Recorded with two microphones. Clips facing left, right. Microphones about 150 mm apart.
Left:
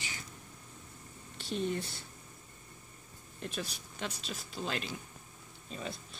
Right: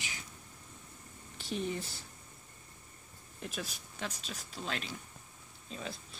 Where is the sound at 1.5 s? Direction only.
5° right (ahead or behind).